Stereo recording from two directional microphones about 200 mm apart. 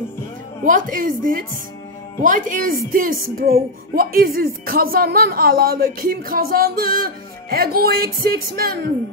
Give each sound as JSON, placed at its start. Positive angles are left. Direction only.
{"t": 0.7, "sound": "speech", "side_deg": -40}